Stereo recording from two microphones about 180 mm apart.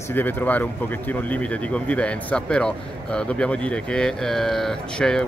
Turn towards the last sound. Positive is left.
turn(degrees=5)  # may be behind; listen again after turning